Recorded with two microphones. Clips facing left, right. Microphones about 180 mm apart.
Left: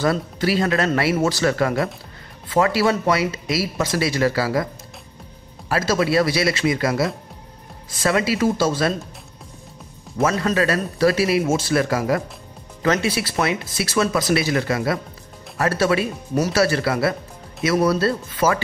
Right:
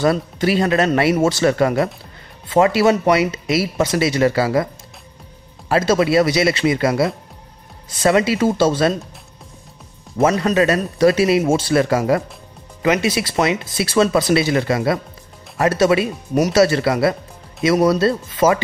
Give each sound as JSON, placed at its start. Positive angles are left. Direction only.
{"t": 0.0, "sound": "speech", "side_deg": -20}
{"t": 5.7, "sound": "speech", "side_deg": -25}
{"t": 10.2, "sound": "speech", "side_deg": -20}
{"t": 12.8, "sound": "speech", "side_deg": -15}